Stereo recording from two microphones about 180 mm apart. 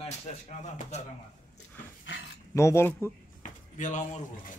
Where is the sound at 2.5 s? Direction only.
15° left (ahead or behind).